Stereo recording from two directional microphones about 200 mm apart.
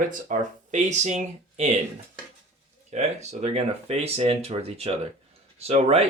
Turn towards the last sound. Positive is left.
turn(degrees=-30)  # may be behind; listen again after turning